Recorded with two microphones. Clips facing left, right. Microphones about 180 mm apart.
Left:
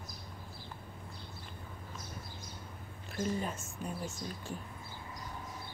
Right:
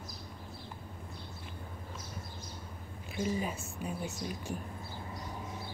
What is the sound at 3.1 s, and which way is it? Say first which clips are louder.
Speech: right 1 dB; 5° right (ahead or behind).